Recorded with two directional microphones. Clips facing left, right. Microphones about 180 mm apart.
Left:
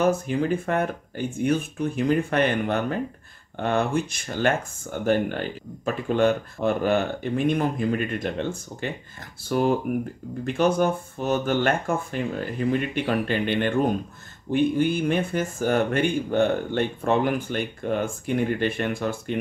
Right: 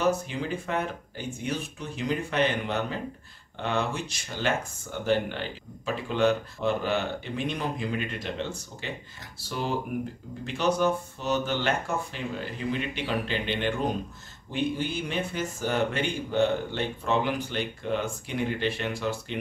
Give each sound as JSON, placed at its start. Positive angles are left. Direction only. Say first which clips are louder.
{"t": 0.0, "sound": "speech", "louder": "left 5 dB", "side_deg": 50}